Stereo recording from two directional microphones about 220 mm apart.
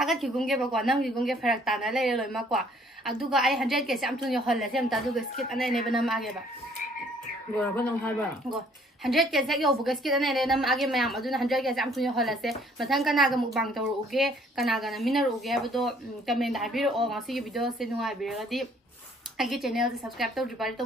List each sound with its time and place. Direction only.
0.0 s a woman's voice: centre (ahead or behind)
7.5 s a woman's voice: 5° left (ahead or behind)